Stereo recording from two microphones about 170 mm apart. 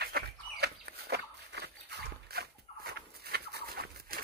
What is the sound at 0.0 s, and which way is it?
Dog, 75° right (ahead or behind).